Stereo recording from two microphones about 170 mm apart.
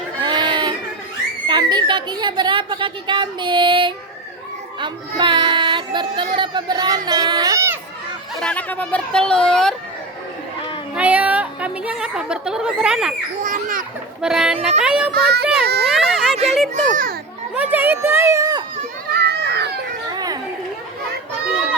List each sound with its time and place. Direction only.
0.2 s a sound: 25° right (ahead or behind)
1.5 s a woman's voice: 25° right (ahead or behind)
8.4 s a woman's voice: 5° left (ahead or behind)
10.9 s a woman's voice: 10° right (ahead or behind)
13.4 s a child's voice: 50° right (ahead or behind)
14.2 s a woman's voice: 5° right (ahead or behind)
15.1 s a child's voice: 70° right (ahead or behind)
16.1 s a sound: centre (ahead or behind)
16.7 s a child's voice: 50° right (ahead or behind)
17.5 s speech: 10° right (ahead or behind)
19.2 s children playing: 75° right (ahead or behind)
20.1 s chatter: 20° right (ahead or behind)